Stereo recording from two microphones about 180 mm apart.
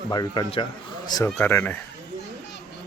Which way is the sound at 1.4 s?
10° left (ahead or behind).